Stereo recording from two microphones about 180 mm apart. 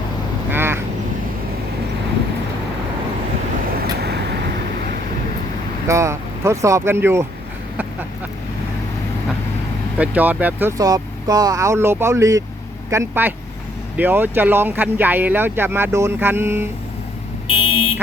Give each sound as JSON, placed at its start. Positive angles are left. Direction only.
{"t": 0.5, "sound": "quack", "side_deg": -10}
{"t": 5.9, "sound": "speech", "side_deg": -15}
{"t": 10.0, "sound": "speech", "side_deg": -10}
{"t": 17.5, "sound": "buzzer", "side_deg": 30}